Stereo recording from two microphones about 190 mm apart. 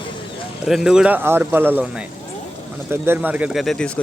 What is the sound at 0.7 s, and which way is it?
A man's voice, centre (ahead or behind).